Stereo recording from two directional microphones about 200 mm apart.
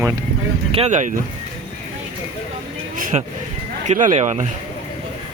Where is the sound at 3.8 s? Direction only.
35° right (ahead or behind).